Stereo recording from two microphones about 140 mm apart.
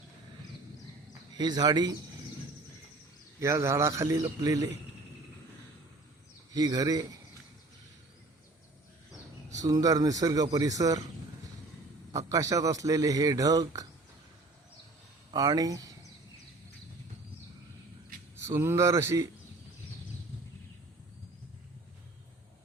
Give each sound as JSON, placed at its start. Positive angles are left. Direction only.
{"t": 1.4, "sound": "speech", "side_deg": -30}
{"t": 3.4, "sound": "a man's voice", "side_deg": -20}
{"t": 6.5, "sound": "a man's voice", "side_deg": -30}
{"t": 9.6, "sound": "a man's voice", "side_deg": -25}
{"t": 12.1, "sound": "a man's voice", "side_deg": -25}
{"t": 15.3, "sound": "speech", "side_deg": -25}
{"t": 18.4, "sound": "a man's voice", "side_deg": -20}